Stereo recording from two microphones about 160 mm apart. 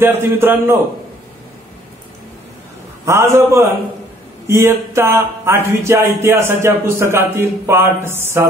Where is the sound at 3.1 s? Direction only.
15° right (ahead or behind).